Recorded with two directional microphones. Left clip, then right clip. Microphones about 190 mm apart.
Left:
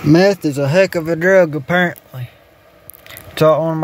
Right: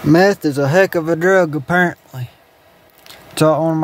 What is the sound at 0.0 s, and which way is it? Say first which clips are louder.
Speech: even; 10° right (ahead or behind).